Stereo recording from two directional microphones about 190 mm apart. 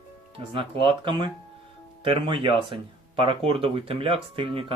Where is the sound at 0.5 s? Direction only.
25° right (ahead or behind).